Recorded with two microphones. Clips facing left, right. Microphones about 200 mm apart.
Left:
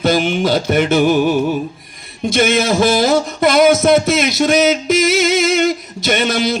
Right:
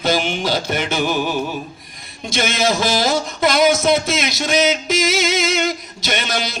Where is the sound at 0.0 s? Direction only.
55° left (ahead or behind).